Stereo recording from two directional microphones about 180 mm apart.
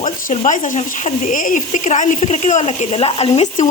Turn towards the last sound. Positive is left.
turn(degrees=30)  # may be behind; listen again after turning